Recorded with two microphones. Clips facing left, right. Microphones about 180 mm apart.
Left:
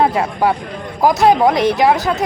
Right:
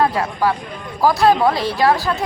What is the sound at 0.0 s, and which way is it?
A woman's voice, 25° left (ahead or behind).